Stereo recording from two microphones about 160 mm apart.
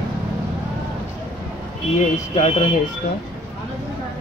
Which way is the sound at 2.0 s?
45° left (ahead or behind).